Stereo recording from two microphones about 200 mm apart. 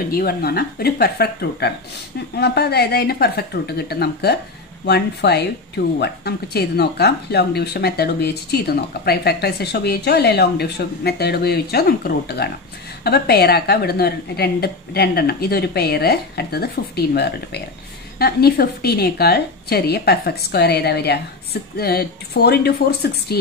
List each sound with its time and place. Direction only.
0.1 s speech: 50° left (ahead or behind)